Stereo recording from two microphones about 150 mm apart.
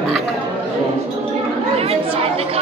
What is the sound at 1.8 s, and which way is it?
Chatter, 40° right (ahead or behind).